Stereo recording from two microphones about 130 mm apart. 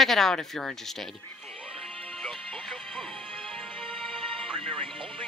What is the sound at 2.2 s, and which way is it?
Music, centre (ahead or behind).